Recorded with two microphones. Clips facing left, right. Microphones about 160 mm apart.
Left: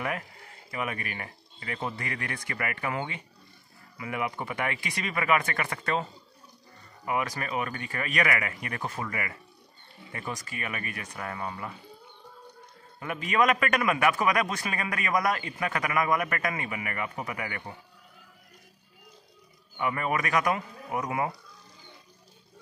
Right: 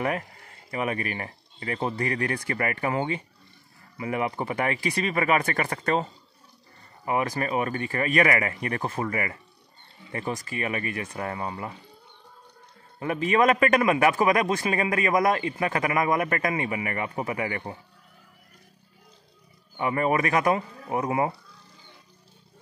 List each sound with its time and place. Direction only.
0.7 s a man's voice: 35° right (ahead or behind)
7.1 s a man's voice: 35° right (ahead or behind)
13.0 s a man's voice: 35° right (ahead or behind)
19.8 s a man's voice: 35° right (ahead or behind)